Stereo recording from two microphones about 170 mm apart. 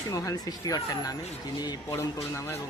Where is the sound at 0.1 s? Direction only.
20° left (ahead or behind).